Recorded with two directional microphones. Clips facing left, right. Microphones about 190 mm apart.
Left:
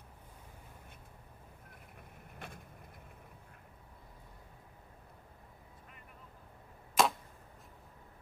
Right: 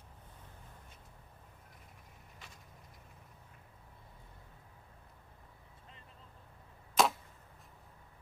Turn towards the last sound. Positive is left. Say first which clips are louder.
# even
turn(degrees=0)  # may be behind; listen again after turning